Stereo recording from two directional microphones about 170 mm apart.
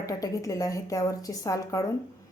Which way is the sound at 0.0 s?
20° left (ahead or behind).